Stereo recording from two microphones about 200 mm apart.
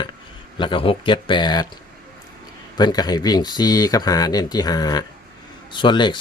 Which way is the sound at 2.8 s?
20° left (ahead or behind).